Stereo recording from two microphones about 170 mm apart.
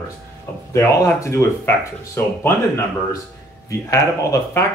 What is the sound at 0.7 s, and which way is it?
Speech, 15° left (ahead or behind).